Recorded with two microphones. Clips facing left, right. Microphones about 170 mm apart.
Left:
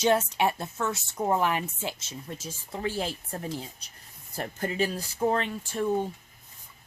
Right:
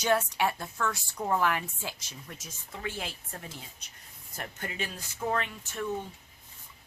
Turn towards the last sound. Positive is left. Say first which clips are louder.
# left 7 dB
turn(degrees=35)  # may be behind; listen again after turning